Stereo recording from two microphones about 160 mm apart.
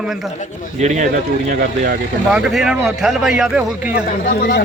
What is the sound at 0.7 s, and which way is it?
Speech, 50° right (ahead or behind).